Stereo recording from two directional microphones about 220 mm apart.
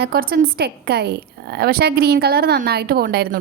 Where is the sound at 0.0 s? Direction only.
45° right (ahead or behind).